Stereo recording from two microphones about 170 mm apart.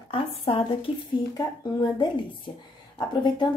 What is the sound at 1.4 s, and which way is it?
Speech, 25° left (ahead or behind).